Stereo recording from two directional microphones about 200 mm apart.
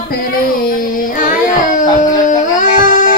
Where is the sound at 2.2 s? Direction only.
40° left (ahead or behind).